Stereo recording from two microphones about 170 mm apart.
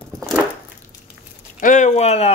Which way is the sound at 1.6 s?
45° left (ahead or behind).